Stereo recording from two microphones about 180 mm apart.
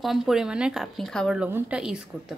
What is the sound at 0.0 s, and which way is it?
A woman's voice, centre (ahead or behind).